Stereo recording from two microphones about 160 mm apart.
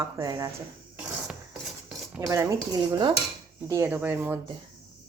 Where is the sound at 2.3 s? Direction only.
20° right (ahead or behind).